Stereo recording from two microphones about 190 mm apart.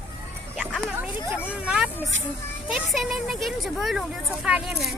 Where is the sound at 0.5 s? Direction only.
Centre (ahead or behind).